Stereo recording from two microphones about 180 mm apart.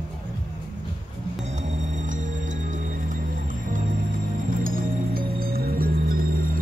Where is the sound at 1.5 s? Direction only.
40° right (ahead or behind).